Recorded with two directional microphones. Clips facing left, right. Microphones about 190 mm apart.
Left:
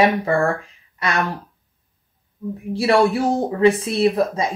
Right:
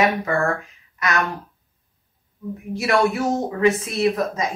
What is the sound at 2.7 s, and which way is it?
Speech, 30° left (ahead or behind).